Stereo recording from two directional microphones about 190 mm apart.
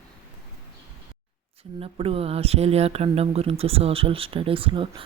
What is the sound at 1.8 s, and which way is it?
Speech, 30° right (ahead or behind).